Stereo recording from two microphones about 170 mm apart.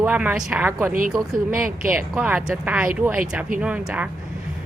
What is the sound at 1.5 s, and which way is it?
Speech, 55° right (ahead or behind).